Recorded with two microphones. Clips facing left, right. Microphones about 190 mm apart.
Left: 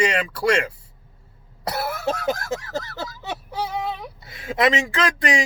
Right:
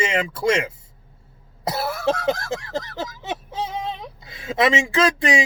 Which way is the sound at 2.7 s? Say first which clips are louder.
Right 1 dB; 15° right (ahead or behind).